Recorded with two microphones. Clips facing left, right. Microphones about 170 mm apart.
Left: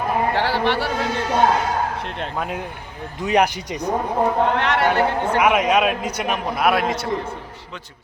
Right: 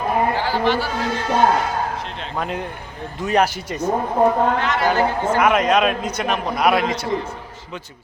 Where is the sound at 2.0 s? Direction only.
55° left (ahead or behind).